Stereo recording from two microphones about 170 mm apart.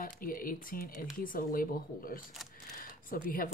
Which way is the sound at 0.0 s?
55° left (ahead or behind).